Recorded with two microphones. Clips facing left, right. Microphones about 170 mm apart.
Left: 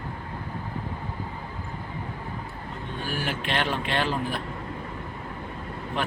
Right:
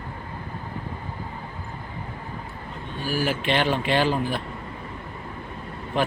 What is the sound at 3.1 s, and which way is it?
Speech, 5° right (ahead or behind).